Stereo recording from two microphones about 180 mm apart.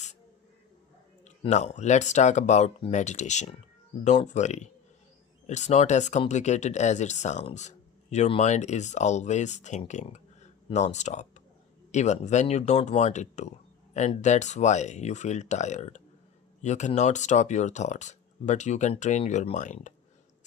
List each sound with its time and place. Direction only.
1.5 s speech: 40° left (ahead or behind)